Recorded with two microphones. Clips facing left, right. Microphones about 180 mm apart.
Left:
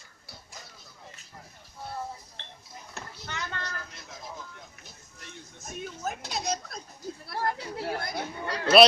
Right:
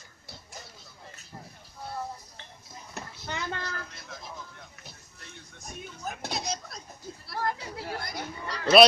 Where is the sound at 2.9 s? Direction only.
20° right (ahead or behind).